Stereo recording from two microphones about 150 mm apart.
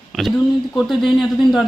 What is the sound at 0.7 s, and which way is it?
Speech, centre (ahead or behind).